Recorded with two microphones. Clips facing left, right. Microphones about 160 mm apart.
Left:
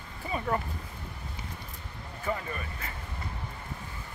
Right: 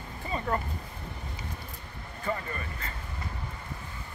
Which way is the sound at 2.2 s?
5° left (ahead or behind).